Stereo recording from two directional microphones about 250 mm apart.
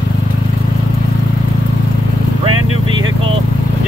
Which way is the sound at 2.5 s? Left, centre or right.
Right.